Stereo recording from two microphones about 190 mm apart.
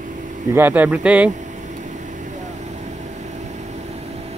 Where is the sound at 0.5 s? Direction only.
10° right (ahead or behind).